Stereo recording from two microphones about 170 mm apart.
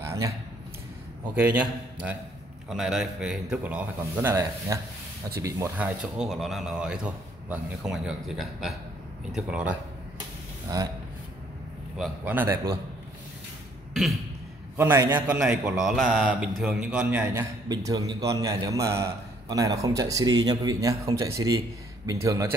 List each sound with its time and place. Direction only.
0.0 s a sound: 15° right (ahead or behind)
1.3 s a man's voice: 10° right (ahead or behind)
12.0 s a man's voice: 10° right (ahead or behind)
14.8 s a man's voice: 10° right (ahead or behind)
17.6 s a man's voice: 25° right (ahead or behind)